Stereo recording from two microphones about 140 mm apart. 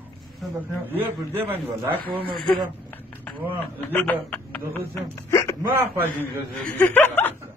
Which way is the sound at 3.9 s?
10° left (ahead or behind).